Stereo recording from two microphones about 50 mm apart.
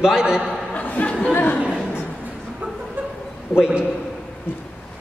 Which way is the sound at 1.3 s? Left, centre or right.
Left.